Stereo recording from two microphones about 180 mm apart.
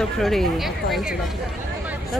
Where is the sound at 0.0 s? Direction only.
Centre (ahead or behind).